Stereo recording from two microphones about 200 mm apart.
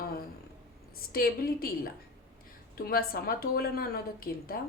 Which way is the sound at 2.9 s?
50° left (ahead or behind).